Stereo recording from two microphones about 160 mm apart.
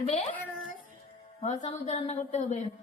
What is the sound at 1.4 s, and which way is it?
A woman's voice, 45° left (ahead or behind).